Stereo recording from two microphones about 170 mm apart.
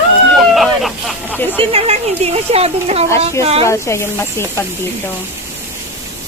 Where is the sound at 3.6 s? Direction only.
15° left (ahead or behind).